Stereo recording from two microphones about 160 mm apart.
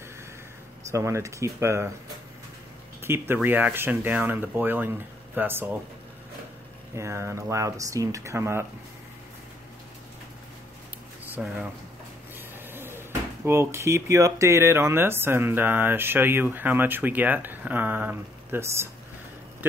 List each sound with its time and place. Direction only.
0.9 s speech: 20° right (ahead or behind)
3.0 s speech: 15° right (ahead or behind)
7.0 s speech: 15° right (ahead or behind)
11.3 s speech: 10° right (ahead or behind)
12.4 s a sound: 15° right (ahead or behind)
13.5 s speech: 15° right (ahead or behind)